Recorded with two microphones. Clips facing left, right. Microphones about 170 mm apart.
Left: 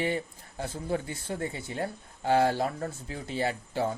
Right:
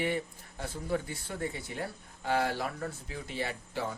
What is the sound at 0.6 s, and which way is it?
Speech, 30° left (ahead or behind).